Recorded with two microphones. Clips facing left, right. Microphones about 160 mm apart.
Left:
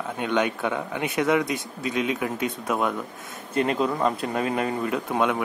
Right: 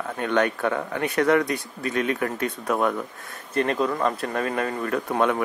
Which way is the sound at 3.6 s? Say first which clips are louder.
Even; 20° left (ahead or behind).